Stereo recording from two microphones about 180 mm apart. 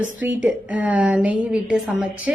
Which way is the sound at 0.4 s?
10° right (ahead or behind).